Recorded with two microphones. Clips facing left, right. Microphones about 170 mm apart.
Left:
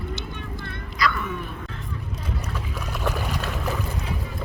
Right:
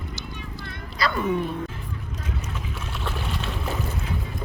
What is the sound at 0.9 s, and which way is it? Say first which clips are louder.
Speech: right 2 dB; 25° right (ahead or behind).